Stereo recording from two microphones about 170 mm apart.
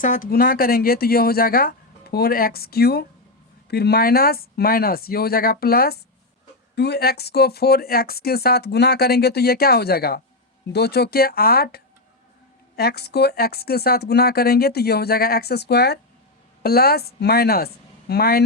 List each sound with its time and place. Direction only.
0.0 s speech: 50° left (ahead or behind)
6.7 s speech: 75° left (ahead or behind)